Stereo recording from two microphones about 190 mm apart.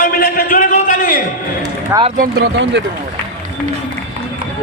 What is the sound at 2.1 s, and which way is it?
Speech, 50° right (ahead or behind).